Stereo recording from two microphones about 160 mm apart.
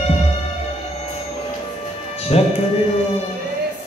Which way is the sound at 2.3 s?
40° left (ahead or behind).